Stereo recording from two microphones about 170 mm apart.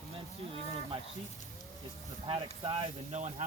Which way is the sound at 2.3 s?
30° right (ahead or behind).